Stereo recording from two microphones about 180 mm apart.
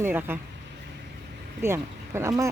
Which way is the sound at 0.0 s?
10° right (ahead or behind).